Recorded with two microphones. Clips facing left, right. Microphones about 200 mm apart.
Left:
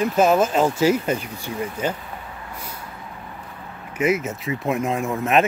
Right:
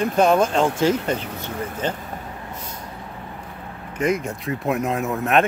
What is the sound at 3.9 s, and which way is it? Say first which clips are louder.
Speech: left 1 dB; 5° left (ahead or behind).